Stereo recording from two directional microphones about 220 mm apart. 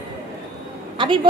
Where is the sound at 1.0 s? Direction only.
20° right (ahead or behind).